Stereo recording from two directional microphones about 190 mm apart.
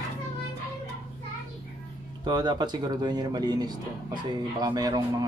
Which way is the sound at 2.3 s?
20° right (ahead or behind).